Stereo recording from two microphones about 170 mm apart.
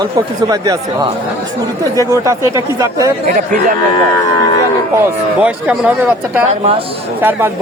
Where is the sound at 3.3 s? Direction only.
50° right (ahead or behind).